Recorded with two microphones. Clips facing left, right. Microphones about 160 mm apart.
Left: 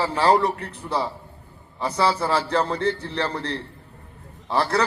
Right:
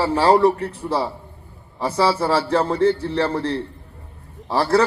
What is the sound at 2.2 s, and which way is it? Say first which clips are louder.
A man's voice: right 3 dB; 30° right (ahead or behind).